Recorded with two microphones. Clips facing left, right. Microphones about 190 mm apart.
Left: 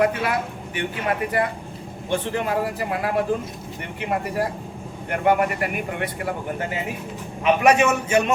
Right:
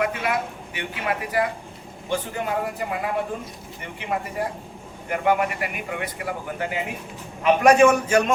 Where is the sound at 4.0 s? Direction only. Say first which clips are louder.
Left 3 dB; 65° left (ahead or behind).